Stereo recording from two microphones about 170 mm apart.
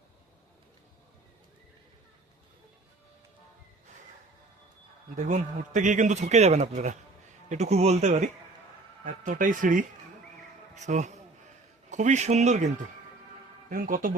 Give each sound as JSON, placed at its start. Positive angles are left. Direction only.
{"t": 5.2, "sound": "a man's voice", "side_deg": -45}
{"t": 13.7, "sound": "speech", "side_deg": -55}